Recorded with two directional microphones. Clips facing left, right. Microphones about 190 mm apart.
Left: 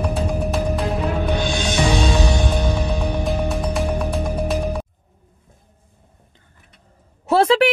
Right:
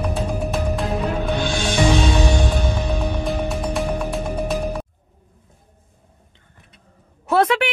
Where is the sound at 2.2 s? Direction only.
Centre (ahead or behind).